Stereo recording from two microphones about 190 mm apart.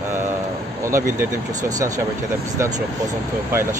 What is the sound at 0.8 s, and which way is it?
Speech, 15° right (ahead or behind).